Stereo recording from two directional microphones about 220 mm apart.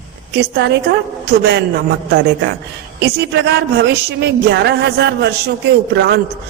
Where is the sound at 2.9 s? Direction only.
50° right (ahead or behind).